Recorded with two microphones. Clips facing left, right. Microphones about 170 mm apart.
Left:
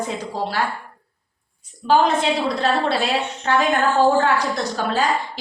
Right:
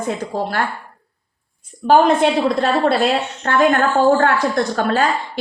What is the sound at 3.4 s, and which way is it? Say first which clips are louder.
A woman's voice: right 4 dB; 55° right (ahead or behind).